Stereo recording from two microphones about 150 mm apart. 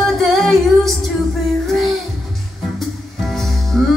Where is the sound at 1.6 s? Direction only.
Centre (ahead or behind).